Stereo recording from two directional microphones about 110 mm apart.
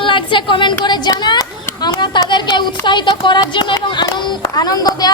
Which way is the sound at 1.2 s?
40° left (ahead or behind).